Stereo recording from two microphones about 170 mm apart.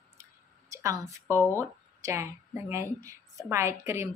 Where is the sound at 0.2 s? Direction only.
20° right (ahead or behind).